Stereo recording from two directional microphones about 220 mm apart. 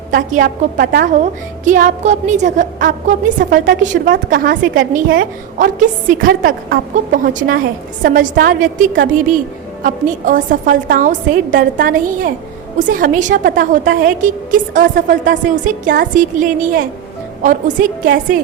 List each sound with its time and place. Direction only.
0.1 s a woman's voice: 35° right (ahead or behind)